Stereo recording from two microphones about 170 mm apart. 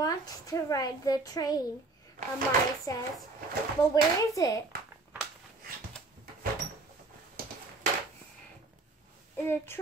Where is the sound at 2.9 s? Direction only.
20° left (ahead or behind).